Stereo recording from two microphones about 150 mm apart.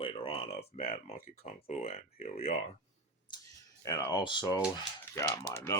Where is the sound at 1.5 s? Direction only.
45° left (ahead or behind).